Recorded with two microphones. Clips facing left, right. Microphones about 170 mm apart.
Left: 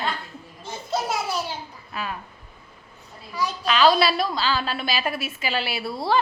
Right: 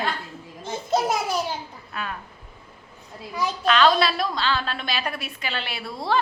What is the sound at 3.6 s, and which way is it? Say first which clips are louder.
A woman's voice: left 1 dB; 5° left (ahead or behind).